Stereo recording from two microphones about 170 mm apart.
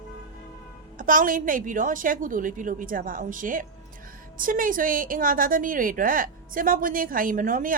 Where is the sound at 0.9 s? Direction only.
50° right (ahead or behind).